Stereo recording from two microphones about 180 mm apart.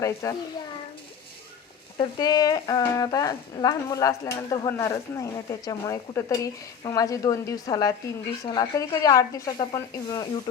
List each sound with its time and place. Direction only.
0.0 s a child's voice: 20° left (ahead or behind)
2.0 s speech: 20° left (ahead or behind)